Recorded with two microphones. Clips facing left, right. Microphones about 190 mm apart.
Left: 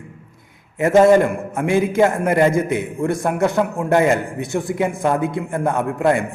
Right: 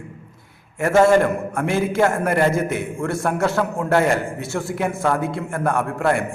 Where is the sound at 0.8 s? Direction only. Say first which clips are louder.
Left 3 dB; 20° left (ahead or behind).